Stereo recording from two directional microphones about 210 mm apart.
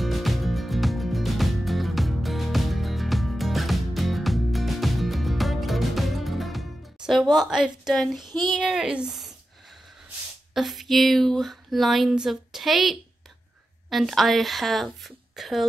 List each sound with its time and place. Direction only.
0.0 s music: centre (ahead or behind)
7.3 s speech: 5° right (ahead or behind)
8.2 s speech: 20° right (ahead or behind)
8.5 s speech: 5° right (ahead or behind)
10.5 s speech: centre (ahead or behind)